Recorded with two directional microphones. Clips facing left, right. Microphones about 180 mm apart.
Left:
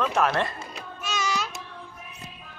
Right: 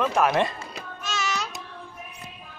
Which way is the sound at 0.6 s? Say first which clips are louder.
Even; 10° left (ahead or behind).